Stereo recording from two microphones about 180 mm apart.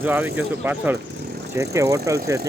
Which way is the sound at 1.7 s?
15° right (ahead or behind).